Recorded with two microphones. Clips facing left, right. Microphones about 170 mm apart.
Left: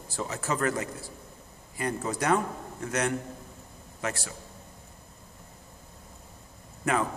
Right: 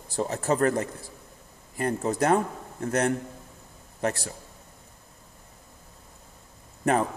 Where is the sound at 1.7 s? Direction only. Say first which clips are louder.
Right 4 dB; 45° right (ahead or behind).